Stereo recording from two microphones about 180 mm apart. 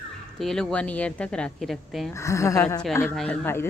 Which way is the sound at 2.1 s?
15° left (ahead or behind).